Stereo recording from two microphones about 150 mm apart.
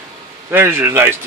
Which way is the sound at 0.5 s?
15° right (ahead or behind).